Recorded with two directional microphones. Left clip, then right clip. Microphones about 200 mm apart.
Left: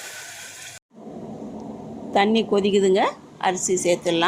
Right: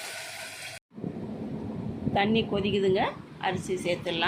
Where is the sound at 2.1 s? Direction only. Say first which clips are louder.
Left 7 dB; 40° left (ahead or behind).